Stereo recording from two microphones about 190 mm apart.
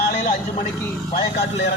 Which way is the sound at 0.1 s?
50° left (ahead or behind).